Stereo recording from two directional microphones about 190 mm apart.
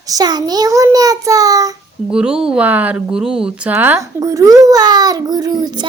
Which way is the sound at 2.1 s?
5° right (ahead or behind).